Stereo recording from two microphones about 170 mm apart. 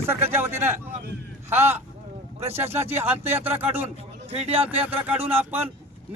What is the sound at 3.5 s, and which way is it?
Speech, 35° right (ahead or behind).